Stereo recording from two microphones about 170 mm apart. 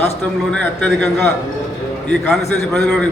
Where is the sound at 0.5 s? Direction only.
5° left (ahead or behind).